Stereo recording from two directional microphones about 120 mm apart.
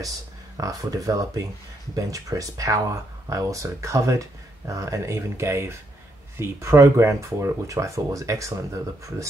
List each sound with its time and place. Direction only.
0.6 s speech: 30° right (ahead or behind)